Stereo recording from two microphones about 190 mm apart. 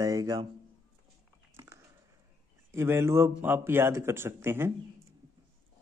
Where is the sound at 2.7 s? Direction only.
15° right (ahead or behind).